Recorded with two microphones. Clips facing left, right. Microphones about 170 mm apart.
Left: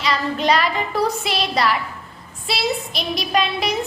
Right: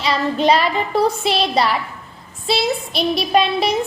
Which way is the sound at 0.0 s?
30° right (ahead or behind).